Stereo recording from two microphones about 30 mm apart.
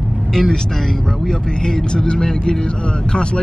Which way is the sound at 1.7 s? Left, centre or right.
Left.